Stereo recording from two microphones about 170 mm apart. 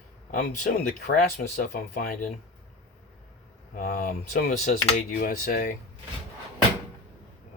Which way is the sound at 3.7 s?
55° left (ahead or behind).